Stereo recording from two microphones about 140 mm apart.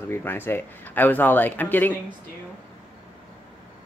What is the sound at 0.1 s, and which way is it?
Speech, 15° left (ahead or behind).